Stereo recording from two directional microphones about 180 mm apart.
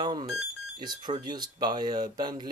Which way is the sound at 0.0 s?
25° right (ahead or behind).